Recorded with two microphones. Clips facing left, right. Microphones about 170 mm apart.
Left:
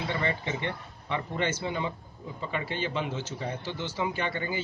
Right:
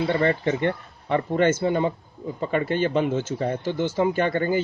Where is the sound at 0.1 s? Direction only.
50° right (ahead or behind).